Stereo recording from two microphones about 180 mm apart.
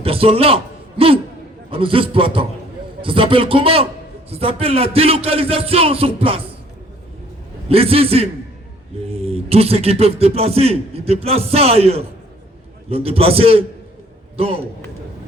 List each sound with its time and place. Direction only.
0.0 s a man's voice: 30° right (ahead or behind)
7.7 s speech: 30° right (ahead or behind)